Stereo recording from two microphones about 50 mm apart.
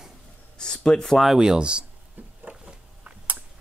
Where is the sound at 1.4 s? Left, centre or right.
Centre.